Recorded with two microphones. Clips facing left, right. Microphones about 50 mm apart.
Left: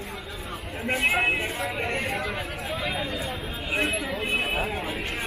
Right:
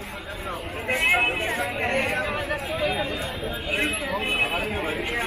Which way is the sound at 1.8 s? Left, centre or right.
Right.